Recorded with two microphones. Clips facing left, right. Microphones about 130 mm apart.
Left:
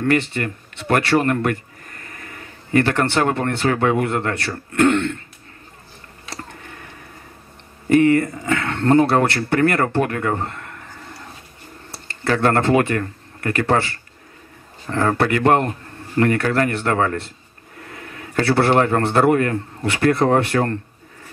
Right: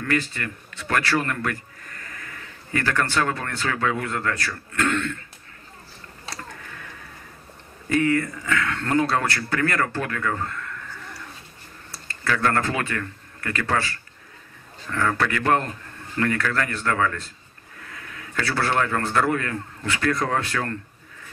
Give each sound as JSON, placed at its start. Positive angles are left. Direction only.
{"t": 0.0, "sound": "a man's voice", "side_deg": 25}
{"t": 6.3, "sound": "tick-tock", "side_deg": 25}
{"t": 7.9, "sound": "a man's voice", "side_deg": 25}
{"t": 12.1, "sound": "a man's voice", "side_deg": 30}